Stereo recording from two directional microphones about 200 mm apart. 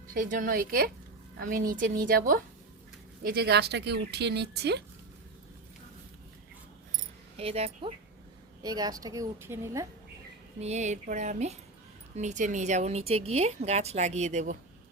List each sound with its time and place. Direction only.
0.1 s a woman's voice: 45° right (ahead or behind)
7.3 s speech: 30° right (ahead or behind)
8.6 s a woman's voice: 20° right (ahead or behind)
10.6 s a woman's voice: 35° right (ahead or behind)